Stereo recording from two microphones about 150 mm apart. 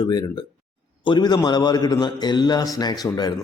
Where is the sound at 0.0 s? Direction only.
25° left (ahead or behind).